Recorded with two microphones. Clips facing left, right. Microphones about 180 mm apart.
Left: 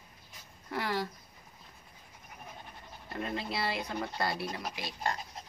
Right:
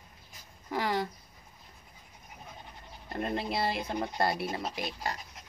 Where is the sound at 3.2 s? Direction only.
50° right (ahead or behind).